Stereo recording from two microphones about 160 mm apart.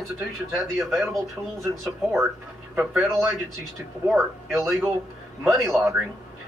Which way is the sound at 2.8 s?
5° right (ahead or behind).